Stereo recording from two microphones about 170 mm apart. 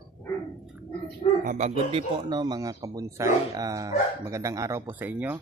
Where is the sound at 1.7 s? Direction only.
30° right (ahead or behind).